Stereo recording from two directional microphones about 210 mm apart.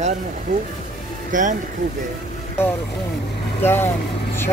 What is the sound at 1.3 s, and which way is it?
Speech, 40° right (ahead or behind).